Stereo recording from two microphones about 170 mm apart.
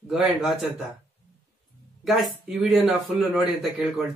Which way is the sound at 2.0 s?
Centre (ahead or behind).